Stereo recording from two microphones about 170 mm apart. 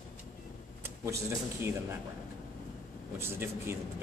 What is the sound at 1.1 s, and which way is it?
Speech, 15° right (ahead or behind).